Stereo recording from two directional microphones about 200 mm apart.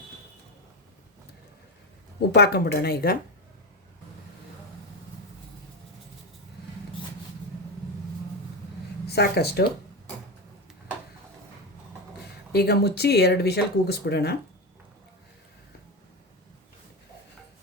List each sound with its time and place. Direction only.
2.3 s speech: 55° left (ahead or behind)
9.0 s speech: 55° left (ahead or behind)
12.5 s speech: 55° left (ahead or behind)